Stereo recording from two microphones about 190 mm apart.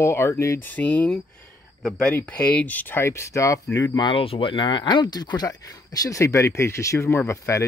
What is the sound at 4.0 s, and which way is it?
Speech, 25° left (ahead or behind).